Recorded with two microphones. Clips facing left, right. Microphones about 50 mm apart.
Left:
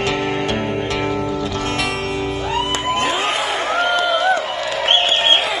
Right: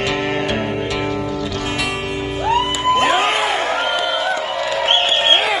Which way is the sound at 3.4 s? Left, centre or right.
Centre.